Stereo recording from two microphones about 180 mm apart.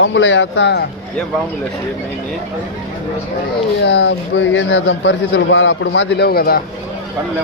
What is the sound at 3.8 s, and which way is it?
A man's voice, 70° left (ahead or behind).